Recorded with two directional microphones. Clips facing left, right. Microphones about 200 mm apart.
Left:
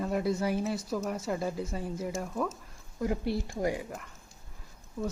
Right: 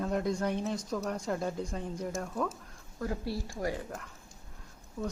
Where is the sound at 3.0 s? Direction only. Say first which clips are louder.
Left 4 dB; 20° left (ahead or behind).